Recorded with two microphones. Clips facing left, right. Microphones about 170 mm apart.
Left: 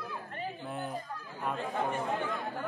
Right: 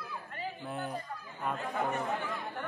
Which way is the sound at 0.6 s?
Centre (ahead or behind).